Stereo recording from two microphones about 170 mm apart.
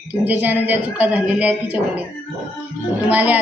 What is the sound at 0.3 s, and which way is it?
A woman's voice, 10° right (ahead or behind).